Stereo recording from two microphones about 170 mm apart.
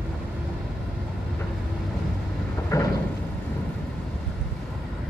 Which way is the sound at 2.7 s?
20° left (ahead or behind).